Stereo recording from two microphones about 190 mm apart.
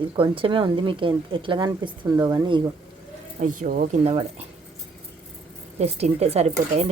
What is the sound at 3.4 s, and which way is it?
A woman's voice, 40° right (ahead or behind).